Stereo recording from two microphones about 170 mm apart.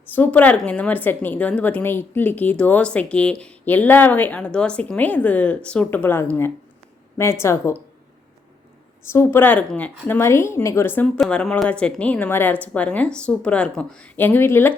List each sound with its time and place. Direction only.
0.1 s speech: 10° left (ahead or behind)
9.0 s speech: 15° left (ahead or behind)